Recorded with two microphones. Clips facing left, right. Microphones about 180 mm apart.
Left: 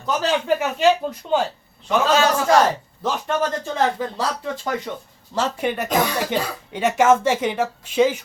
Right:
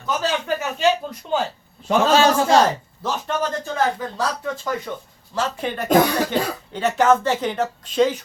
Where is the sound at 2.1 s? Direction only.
30° right (ahead or behind).